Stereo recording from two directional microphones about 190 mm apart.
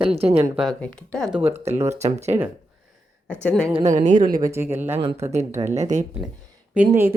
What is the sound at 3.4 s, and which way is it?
Speech, 5° left (ahead or behind).